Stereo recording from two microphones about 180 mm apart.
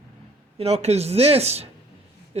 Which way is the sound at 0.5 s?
35° right (ahead or behind).